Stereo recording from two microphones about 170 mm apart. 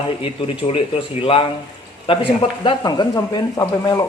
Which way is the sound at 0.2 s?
35° left (ahead or behind).